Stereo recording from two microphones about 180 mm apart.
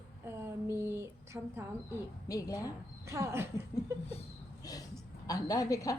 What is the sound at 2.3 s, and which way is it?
Speech, 20° left (ahead or behind).